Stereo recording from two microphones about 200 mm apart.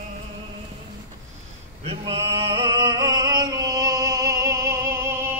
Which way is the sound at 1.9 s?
30° right (ahead or behind).